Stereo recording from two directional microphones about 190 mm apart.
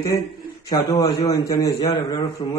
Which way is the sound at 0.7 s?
25° left (ahead or behind).